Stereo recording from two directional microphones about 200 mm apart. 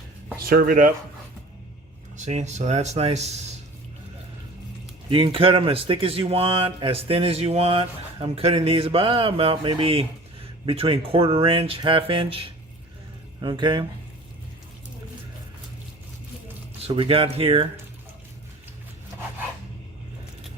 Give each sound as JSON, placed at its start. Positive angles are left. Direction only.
{"t": 0.4, "sound": "speech", "side_deg": -45}
{"t": 2.1, "sound": "speech", "side_deg": -35}
{"t": 5.1, "sound": "speech", "side_deg": -25}
{"t": 16.8, "sound": "speech", "side_deg": -30}